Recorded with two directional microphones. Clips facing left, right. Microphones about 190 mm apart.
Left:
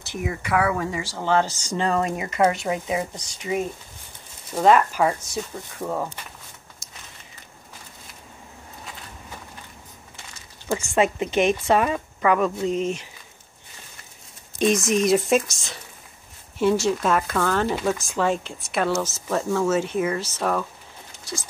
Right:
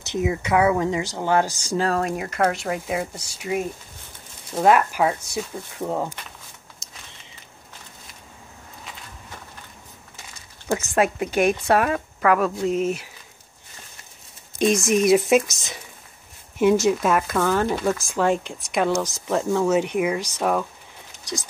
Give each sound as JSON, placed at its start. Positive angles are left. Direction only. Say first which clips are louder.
{"t": 0.0, "sound": "speech", "louder": "right 5 dB", "side_deg": -20}
{"t": 6.8, "sound": "a sound", "louder": "even", "side_deg": -20}
{"t": 11.0, "sound": "a woman's voice", "louder": "even", "side_deg": -5}
{"t": 14.7, "sound": "a woman's voice", "louder": "right 2 dB", "side_deg": 0}
{"t": 15.1, "sound": "speech", "louder": "right 2 dB", "side_deg": -15}
{"t": 16.5, "sound": "speech", "louder": "right 3 dB", "side_deg": -15}
{"t": 21.2, "sound": "a sound", "louder": "right 3 dB", "side_deg": -15}